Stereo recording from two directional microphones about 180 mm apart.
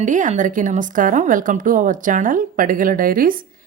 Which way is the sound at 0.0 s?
45° right (ahead or behind).